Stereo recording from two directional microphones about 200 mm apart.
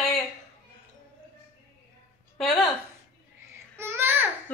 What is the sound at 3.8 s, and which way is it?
Babbling, 10° right (ahead or behind).